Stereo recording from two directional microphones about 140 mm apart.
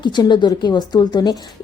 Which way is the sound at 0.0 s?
30° left (ahead or behind).